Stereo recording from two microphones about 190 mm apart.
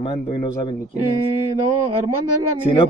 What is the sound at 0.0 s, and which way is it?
Speech, 25° left (ahead or behind).